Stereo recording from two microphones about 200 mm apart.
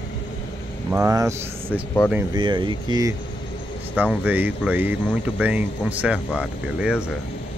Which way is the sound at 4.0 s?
5° right (ahead or behind).